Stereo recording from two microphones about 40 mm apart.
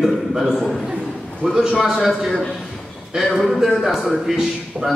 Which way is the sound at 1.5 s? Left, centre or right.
Centre.